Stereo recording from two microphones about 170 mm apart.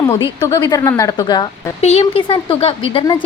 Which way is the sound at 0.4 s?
20° left (ahead or behind).